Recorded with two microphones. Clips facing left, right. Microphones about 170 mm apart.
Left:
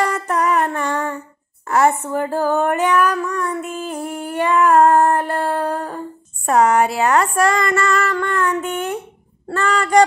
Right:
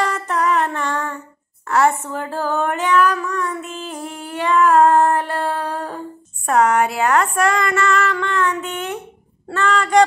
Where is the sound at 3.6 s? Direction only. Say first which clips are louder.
Left 4 dB; 50° left (ahead or behind).